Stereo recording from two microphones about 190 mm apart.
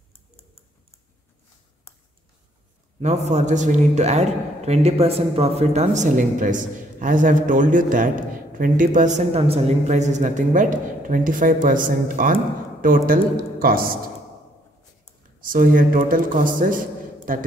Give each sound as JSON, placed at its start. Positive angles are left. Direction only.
{"t": 3.0, "sound": "a man's voice", "side_deg": -35}
{"t": 15.4, "sound": "a man's voice", "side_deg": -45}